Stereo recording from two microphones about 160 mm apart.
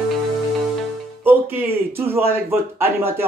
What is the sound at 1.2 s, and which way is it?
A man's voice, 10° right (ahead or behind).